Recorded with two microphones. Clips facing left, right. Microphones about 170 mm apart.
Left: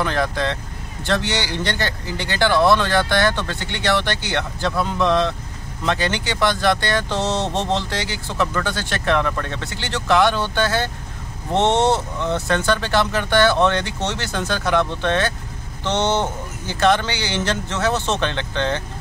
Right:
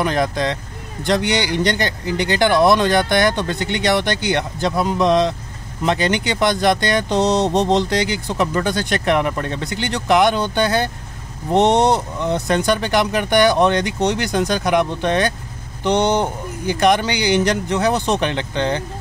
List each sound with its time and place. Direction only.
0.0 s speech: 20° right (ahead or behind)